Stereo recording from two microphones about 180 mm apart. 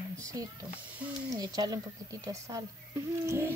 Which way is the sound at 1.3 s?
20° right (ahead or behind).